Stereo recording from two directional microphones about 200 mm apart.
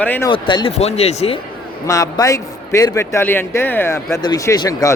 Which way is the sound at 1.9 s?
15° left (ahead or behind).